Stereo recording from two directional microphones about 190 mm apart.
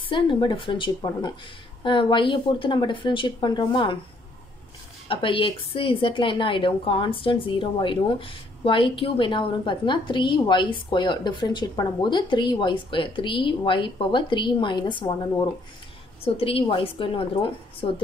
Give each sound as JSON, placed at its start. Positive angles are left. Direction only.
{"t": 0.1, "sound": "a woman's voice", "side_deg": 25}
{"t": 5.0, "sound": "a woman's voice", "side_deg": 25}